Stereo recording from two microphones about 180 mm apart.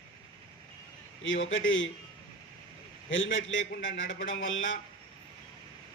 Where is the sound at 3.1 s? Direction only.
90° left.